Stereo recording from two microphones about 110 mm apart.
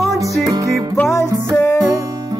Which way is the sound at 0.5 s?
30° right (ahead or behind).